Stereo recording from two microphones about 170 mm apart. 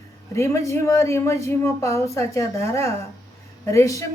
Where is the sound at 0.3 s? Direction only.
15° left (ahead or behind).